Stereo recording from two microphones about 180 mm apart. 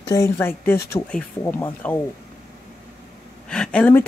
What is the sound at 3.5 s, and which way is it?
Speech, 5° left (ahead or behind).